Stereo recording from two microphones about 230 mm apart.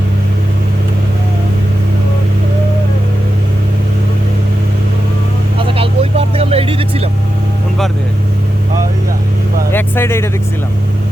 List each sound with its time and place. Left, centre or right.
5.5 s vehicle: right
9.7 s vehicle: centre